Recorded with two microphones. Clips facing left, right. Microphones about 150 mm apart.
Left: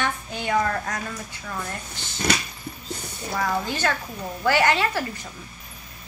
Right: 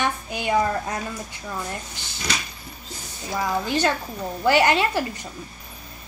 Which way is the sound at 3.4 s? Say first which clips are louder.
Right 2 dB; 15° right (ahead or behind).